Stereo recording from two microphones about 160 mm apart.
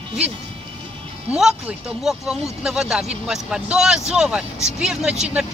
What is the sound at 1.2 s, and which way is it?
Speech, 5° right (ahead or behind).